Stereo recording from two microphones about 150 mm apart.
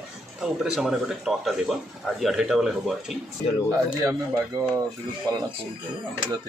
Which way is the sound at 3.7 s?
20° right (ahead or behind).